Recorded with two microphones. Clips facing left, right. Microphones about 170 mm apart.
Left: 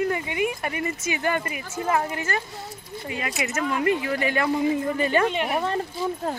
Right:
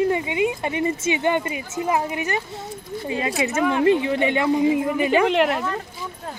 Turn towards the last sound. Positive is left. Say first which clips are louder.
# right 7 dB
turn(degrees=-90)